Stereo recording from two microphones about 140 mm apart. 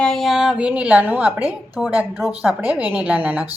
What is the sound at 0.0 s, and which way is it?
A woman's voice, centre (ahead or behind).